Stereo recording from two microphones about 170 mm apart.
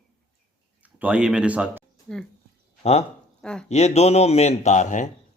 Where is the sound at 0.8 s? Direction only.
10° right (ahead or behind).